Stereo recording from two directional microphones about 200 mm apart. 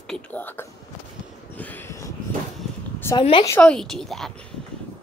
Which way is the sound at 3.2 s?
25° left (ahead or behind).